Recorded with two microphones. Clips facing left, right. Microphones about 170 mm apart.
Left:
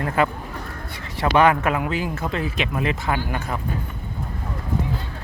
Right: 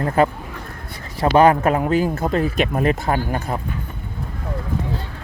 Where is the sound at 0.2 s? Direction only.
40° right (ahead or behind).